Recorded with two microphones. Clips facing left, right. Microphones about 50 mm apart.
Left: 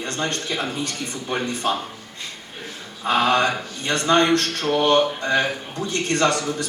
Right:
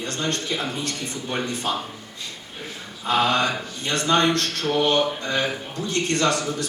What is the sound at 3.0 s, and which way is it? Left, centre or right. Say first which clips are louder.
Speech: left 2 dB; left.